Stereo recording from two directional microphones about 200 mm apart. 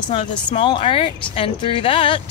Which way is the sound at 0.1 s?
25° left (ahead or behind).